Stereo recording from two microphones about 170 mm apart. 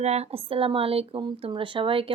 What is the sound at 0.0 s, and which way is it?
Speech, 40° right (ahead or behind).